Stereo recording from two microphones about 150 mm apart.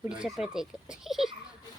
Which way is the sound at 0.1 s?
5° right (ahead or behind).